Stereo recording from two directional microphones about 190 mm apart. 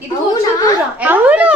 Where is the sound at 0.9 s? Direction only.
10° right (ahead or behind).